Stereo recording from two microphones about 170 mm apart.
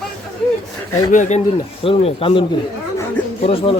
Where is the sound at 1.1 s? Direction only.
45° left (ahead or behind).